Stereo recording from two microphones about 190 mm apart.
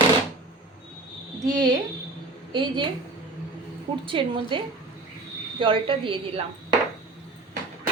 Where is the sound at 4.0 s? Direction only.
25° right (ahead or behind).